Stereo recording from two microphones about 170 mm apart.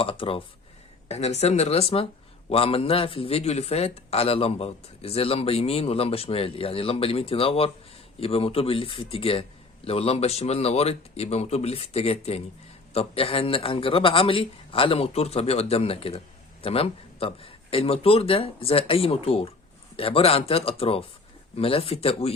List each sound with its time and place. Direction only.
0.0 s a man's voice: 30° left (ahead or behind)